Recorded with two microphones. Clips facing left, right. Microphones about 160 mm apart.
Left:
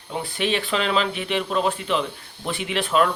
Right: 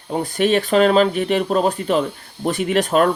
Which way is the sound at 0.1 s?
45° right (ahead or behind).